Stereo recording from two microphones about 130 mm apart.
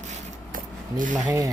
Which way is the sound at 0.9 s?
90° right.